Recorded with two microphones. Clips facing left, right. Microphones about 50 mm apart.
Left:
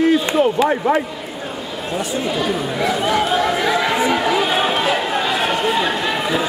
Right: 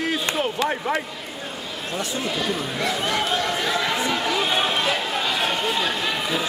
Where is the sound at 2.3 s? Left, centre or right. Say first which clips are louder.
Left 5 dB; centre.